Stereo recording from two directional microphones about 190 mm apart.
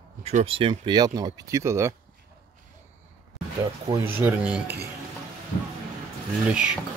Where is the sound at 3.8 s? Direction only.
15° right (ahead or behind).